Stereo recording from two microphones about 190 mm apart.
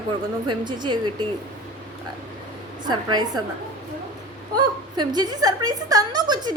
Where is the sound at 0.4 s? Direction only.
25° right (ahead or behind).